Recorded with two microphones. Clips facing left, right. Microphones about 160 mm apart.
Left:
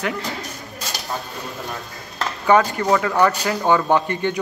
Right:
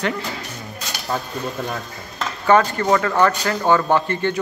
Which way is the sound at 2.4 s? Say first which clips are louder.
Right 1 dB; 10° left (ahead or behind).